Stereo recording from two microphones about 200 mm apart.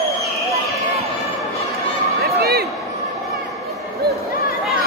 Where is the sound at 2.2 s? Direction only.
50° right (ahead or behind).